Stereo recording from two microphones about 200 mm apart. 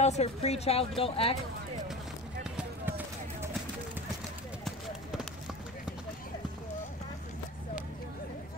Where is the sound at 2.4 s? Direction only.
5° right (ahead or behind).